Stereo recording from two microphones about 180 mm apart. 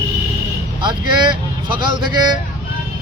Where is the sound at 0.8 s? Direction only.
25° right (ahead or behind).